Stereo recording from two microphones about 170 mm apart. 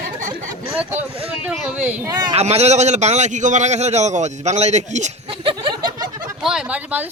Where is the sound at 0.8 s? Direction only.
10° right (ahead or behind).